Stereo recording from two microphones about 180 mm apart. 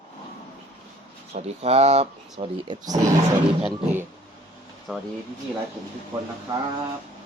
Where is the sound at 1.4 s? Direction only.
35° right (ahead or behind).